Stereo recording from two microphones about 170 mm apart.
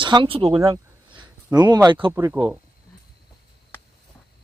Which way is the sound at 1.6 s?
25° right (ahead or behind).